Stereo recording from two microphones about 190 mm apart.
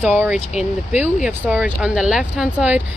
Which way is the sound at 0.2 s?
5° right (ahead or behind).